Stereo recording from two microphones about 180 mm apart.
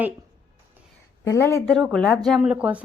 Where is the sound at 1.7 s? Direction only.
5° left (ahead or behind).